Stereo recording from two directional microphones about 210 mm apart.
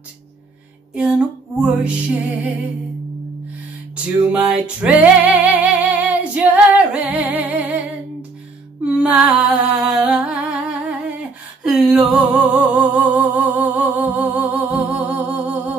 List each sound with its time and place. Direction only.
0.9 s music: 5° right (ahead or behind)
3.9 s music: 5° right (ahead or behind)
8.8 s humming: 5° right (ahead or behind)